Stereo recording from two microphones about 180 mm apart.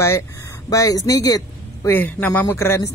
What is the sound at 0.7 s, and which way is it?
A woman's voice, 20° left (ahead or behind).